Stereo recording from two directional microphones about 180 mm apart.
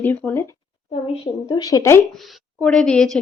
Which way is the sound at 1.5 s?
20° left (ahead or behind).